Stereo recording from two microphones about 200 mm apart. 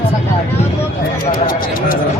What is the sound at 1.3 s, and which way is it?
Speech, 45° left (ahead or behind).